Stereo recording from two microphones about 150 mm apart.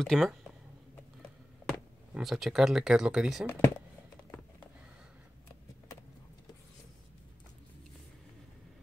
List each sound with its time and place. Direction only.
0.0 s speech: centre (ahead or behind)
1.7 s speech: 5° right (ahead or behind)
3.4 s speech: 15° left (ahead or behind)